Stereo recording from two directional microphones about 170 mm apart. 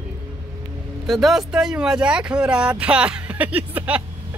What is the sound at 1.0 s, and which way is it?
A woman's voice, centre (ahead or behind).